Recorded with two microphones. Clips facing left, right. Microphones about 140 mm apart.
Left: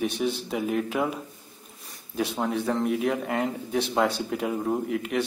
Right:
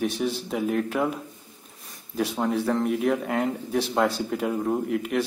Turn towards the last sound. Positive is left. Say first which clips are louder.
# right 2 dB
turn(degrees=0)  # may be behind; listen again after turning